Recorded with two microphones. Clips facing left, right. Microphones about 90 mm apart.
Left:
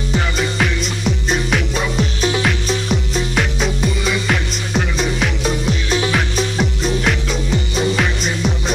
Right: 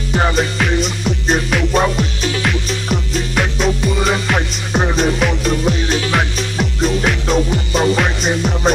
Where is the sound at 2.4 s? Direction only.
Centre (ahead or behind).